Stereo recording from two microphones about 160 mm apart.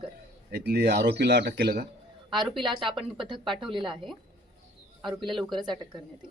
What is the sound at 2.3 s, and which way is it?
Speech, 30° right (ahead or behind).